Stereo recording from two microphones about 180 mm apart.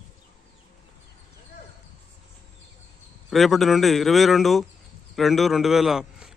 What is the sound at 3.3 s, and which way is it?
A man's voice, centre (ahead or behind).